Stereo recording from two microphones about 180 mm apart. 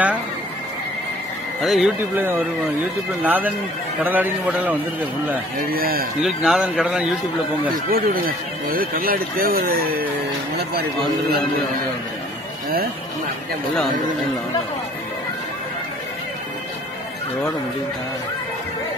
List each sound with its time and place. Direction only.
1.6 s a man's voice: centre (ahead or behind)
5.7 s a man's voice: 55° right (ahead or behind)
6.2 s a man's voice: 5° right (ahead or behind)
7.9 s a man's voice: 55° right (ahead or behind)